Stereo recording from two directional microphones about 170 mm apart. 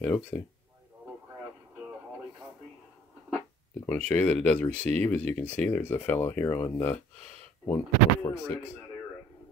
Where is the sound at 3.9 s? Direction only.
10° left (ahead or behind).